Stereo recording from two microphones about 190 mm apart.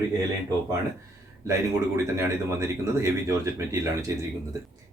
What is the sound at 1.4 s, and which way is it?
Speech, 15° right (ahead or behind).